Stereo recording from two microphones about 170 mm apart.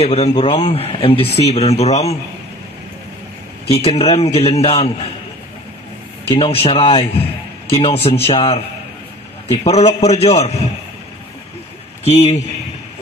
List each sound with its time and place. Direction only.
0.0 s speech: 40° left (ahead or behind)
3.6 s speech: 35° left (ahead or behind)
6.2 s speech: 35° left (ahead or behind)
12.0 s a man's voice: 35° left (ahead or behind)